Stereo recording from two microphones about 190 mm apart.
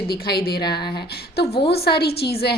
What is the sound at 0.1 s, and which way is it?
Speech, 55° left (ahead or behind).